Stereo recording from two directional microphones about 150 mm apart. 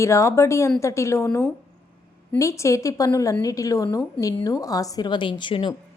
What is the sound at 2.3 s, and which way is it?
A woman's voice, 20° left (ahead or behind).